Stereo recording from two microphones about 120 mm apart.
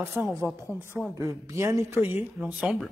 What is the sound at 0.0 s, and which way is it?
A woman's voice, 15° right (ahead or behind).